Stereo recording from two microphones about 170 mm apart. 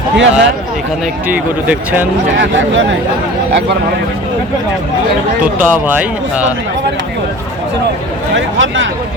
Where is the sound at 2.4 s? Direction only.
90° right.